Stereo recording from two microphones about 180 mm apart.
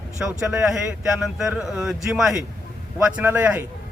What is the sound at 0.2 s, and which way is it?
Speech, 10° right (ahead or behind).